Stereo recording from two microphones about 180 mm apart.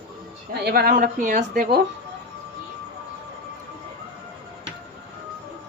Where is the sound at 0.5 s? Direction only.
60° right (ahead or behind).